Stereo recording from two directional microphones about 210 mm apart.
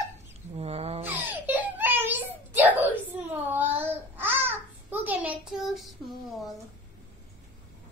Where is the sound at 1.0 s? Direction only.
10° right (ahead or behind).